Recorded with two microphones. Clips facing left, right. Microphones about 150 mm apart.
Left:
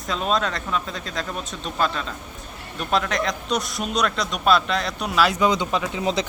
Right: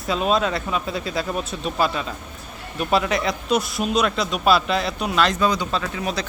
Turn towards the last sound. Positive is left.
turn(degrees=20)  # may be behind; listen again after turning